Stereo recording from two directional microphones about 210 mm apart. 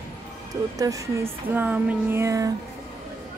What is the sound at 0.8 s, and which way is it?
Speech, 15° right (ahead or behind).